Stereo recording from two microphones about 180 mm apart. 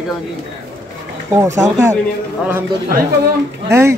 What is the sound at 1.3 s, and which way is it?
Speech, 15° right (ahead or behind).